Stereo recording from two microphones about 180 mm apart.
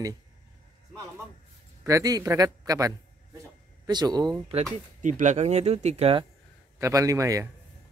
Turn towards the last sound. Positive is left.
turn(degrees=-15)  # may be behind; listen again after turning